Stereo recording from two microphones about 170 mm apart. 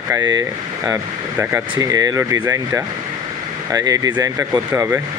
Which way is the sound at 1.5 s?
20° right (ahead or behind).